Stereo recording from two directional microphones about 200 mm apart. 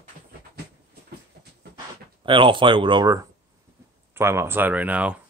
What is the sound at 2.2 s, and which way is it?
Speech, 25° right (ahead or behind).